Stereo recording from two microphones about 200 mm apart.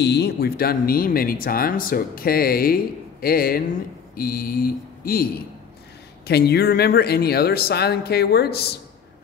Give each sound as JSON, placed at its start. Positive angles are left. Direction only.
{"t": 0.0, "sound": "speech", "side_deg": 55}